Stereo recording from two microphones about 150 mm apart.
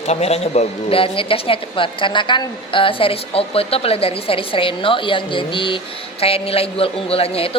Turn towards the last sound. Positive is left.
turn(degrees=40)  # may be behind; listen again after turning